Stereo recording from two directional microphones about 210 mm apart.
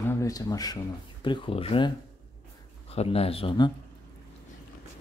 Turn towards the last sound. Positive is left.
turn(degrees=25)  # may be behind; listen again after turning